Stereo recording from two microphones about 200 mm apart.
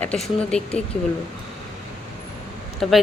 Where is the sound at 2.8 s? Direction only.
Centre (ahead or behind).